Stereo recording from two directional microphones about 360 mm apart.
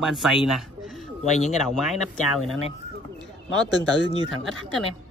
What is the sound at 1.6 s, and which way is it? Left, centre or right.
Speech, centre.